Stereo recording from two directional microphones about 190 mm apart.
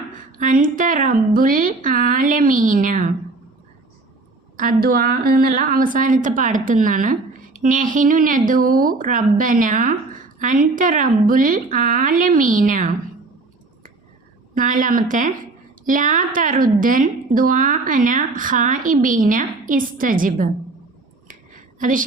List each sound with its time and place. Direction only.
0.3 s a woman's voice: 45° right (ahead or behind)
4.5 s a woman's voice: 45° right (ahead or behind)
14.5 s a woman's voice: 45° right (ahead or behind)
21.8 s a woman's voice: 45° right (ahead or behind)